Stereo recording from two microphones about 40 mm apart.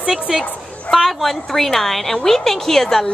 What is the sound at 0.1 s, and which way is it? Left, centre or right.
A woman's voice, centre.